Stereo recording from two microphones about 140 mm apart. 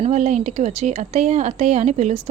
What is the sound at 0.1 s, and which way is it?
A woman's voice, 55° right (ahead or behind).